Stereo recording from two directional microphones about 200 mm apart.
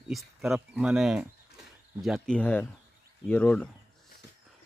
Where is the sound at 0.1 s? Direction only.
Centre (ahead or behind).